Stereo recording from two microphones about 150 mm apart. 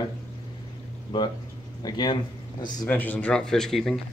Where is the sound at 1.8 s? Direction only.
30° left (ahead or behind).